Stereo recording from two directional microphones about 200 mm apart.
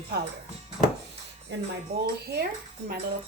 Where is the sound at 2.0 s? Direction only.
55° right (ahead or behind).